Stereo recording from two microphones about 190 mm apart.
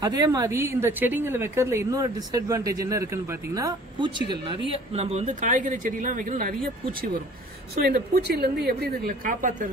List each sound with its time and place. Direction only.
0.0 s a woman's voice: 20° right (ahead or behind); by 6.5 s 45° right (ahead or behind)
7.8 s a woman's voice: 55° right (ahead or behind)